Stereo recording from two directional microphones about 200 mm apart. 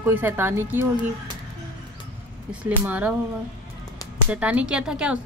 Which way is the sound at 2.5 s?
5° right (ahead or behind).